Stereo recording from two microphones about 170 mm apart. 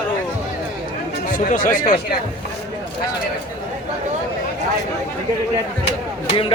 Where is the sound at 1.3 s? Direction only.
50° left (ahead or behind).